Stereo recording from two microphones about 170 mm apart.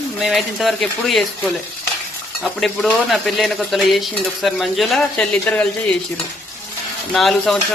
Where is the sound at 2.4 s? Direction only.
Centre (ahead or behind).